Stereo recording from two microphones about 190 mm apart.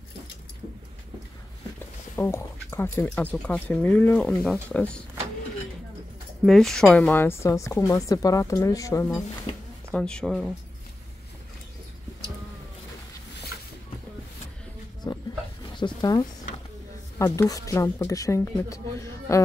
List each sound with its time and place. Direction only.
2.1 s a woman's voice: 10° left (ahead or behind)
6.4 s a woman's voice: centre (ahead or behind); by 9.1 s 15° left (ahead or behind)
9.9 s speech: 5° left (ahead or behind)
15.0 s roaring cats: 20° left (ahead or behind)
15.7 s a sound: 25° left (ahead or behind)
17.2 s a woman's voice: 20° left (ahead or behind)